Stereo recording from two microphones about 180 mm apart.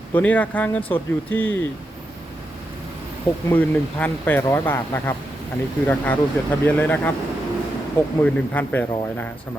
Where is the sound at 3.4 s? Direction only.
10° left (ahead or behind).